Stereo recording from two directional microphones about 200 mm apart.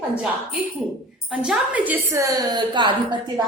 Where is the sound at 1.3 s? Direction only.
5° right (ahead or behind).